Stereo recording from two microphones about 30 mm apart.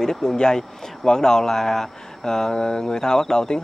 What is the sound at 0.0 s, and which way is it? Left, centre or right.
Speech, centre.